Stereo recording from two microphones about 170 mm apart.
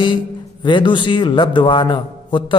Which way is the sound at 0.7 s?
25° left (ahead or behind).